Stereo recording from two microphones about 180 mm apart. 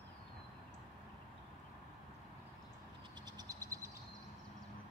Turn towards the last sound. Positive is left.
turn(degrees=-20)  # may be behind; listen again after turning